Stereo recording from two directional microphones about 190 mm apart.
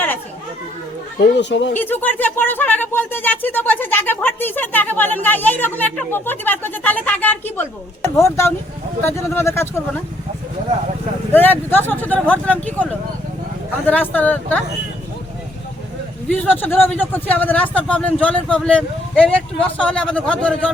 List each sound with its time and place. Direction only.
1.2 s speech: 65° left (ahead or behind)
1.7 s speech: 10° left (ahead or behind)
11.3 s speech: 10° left (ahead or behind)
16.3 s speech: 10° left (ahead or behind)